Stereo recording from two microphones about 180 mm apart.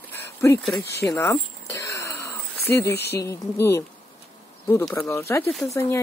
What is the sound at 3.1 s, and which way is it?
Speech, 15° left (ahead or behind).